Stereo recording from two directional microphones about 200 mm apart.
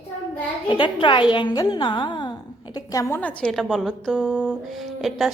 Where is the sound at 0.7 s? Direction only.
25° left (ahead or behind).